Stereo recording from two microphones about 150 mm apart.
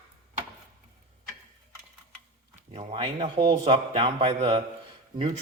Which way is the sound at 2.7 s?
45° right (ahead or behind).